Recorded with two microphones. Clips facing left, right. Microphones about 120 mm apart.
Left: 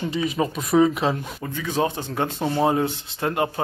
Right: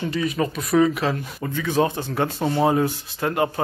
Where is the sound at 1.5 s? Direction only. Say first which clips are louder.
Right 3 dB; 15° left (ahead or behind).